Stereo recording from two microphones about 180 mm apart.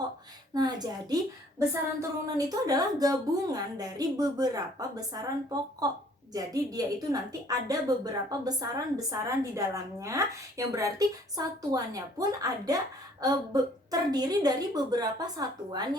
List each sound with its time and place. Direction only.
0.5 s a woman's voice: 20° right (ahead or behind)
6.3 s a woman's voice: 20° right (ahead or behind)